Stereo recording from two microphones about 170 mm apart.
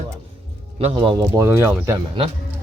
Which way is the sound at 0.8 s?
35° right (ahead or behind).